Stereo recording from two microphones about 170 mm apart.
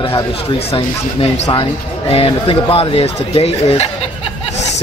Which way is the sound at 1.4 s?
30° left (ahead or behind).